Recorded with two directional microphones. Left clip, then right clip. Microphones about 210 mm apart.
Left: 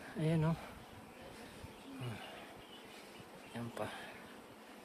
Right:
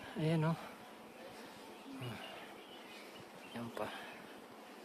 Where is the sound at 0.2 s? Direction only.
5° left (ahead or behind).